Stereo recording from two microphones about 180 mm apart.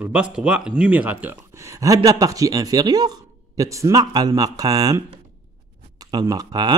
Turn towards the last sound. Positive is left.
turn(degrees=-20)  # may be behind; listen again after turning